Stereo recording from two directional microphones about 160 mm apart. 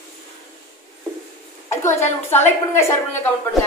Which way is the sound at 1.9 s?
45° left (ahead or behind).